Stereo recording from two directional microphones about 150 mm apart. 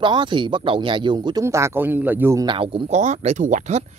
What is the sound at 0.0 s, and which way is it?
Speech, 30° right (ahead or behind).